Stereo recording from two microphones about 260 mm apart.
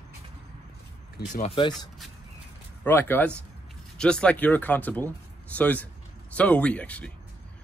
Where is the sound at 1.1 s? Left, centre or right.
Left.